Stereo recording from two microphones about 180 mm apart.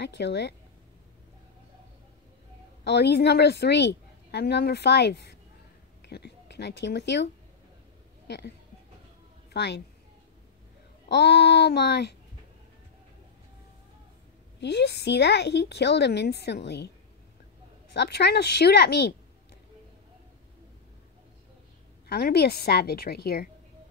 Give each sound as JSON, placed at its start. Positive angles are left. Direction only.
{"t": 0.0, "sound": "a woman's voice", "side_deg": 70}
{"t": 2.8, "sound": "a woman's voice", "side_deg": 70}
{"t": 9.5, "sound": "a woman's voice", "side_deg": 70}
{"t": 11.1, "sound": "a woman's voice", "side_deg": 65}
{"t": 14.6, "sound": "a woman's voice", "side_deg": 70}
{"t": 17.9, "sound": "a woman's voice", "side_deg": 65}
{"t": 22.0, "sound": "a woman's voice", "side_deg": 60}